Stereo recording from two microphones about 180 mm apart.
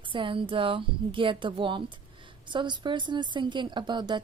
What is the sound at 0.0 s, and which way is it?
A woman's voice, 30° right (ahead or behind).